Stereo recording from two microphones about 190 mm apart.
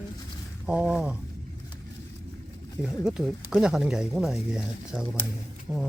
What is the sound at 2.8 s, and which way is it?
Speech, 5° right (ahead or behind).